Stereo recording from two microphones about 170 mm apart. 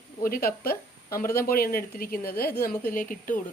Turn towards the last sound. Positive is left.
turn(degrees=55)  # may be behind; listen again after turning